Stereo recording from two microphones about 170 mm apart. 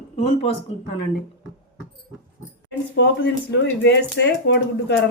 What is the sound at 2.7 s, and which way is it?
Speech, 85° left.